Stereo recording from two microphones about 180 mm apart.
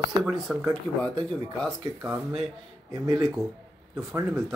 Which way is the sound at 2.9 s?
20° right (ahead or behind).